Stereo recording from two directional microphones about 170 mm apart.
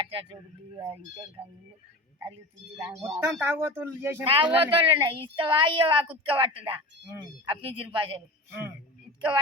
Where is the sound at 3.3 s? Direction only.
15° right (ahead or behind).